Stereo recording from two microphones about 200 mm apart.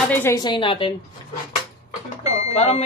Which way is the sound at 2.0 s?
35° left (ahead or behind).